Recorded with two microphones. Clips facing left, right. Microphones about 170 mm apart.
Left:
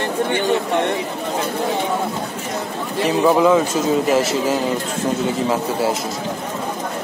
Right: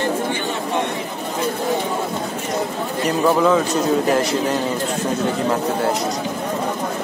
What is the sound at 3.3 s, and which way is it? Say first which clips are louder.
A man's voice: left 2 dB; 5° left (ahead or behind).